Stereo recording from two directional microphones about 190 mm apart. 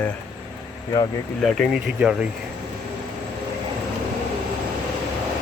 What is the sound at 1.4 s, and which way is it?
Speech, centre (ahead or behind).